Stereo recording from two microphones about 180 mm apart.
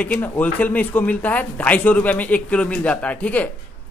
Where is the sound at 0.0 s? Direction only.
10° left (ahead or behind).